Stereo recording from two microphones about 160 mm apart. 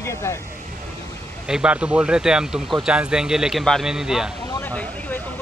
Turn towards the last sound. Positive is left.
turn(degrees=10)  # may be behind; listen again after turning